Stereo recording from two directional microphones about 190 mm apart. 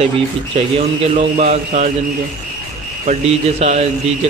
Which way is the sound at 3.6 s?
35° right (ahead or behind).